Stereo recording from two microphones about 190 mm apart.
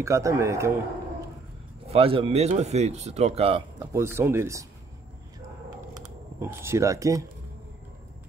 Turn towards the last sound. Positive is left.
turn(degrees=-15)  # may be behind; listen again after turning